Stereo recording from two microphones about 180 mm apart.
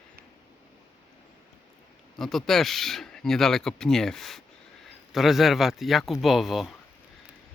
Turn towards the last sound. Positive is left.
turn(degrees=0)  # may be behind; listen again after turning